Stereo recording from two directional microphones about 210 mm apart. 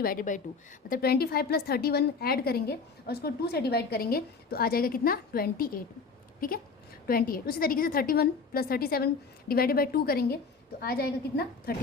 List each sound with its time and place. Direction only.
0.0 s a woman's voice: 40° left (ahead or behind)